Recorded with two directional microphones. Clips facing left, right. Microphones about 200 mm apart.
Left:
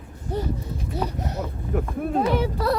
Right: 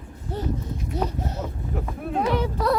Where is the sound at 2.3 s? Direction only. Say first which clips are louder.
Even; 5° left (ahead or behind).